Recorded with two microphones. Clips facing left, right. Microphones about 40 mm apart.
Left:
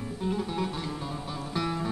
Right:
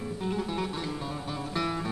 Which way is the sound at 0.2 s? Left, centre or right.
Centre.